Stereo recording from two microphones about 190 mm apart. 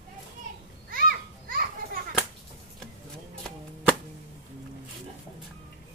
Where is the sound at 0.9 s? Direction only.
50° right (ahead or behind).